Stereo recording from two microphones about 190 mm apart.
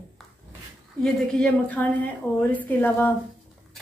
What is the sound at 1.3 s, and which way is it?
A woman's voice, 5° left (ahead or behind).